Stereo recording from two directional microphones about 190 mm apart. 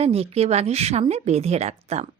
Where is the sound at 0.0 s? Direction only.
30° right (ahead or behind).